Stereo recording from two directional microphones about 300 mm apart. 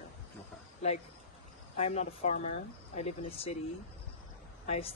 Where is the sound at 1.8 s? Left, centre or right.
Left.